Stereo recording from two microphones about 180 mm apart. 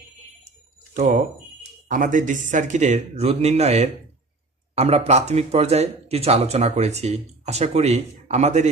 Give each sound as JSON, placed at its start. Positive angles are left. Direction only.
{"t": 0.9, "sound": "speech", "side_deg": -45}